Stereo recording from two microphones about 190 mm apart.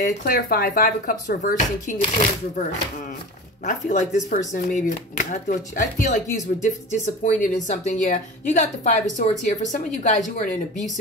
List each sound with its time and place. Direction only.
0.0 s speech: 50° left (ahead or behind)
3.6 s speech: 40° left (ahead or behind)